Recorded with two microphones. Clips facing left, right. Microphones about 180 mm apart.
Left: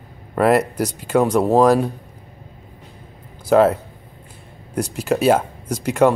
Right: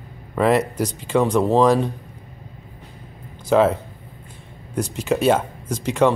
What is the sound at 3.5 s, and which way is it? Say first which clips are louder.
Speech: left 2 dB; 5° left (ahead or behind).